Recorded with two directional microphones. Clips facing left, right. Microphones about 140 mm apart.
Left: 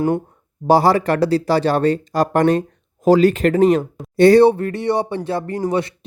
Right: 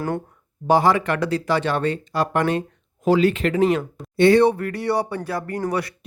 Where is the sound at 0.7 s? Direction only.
35° left (ahead or behind).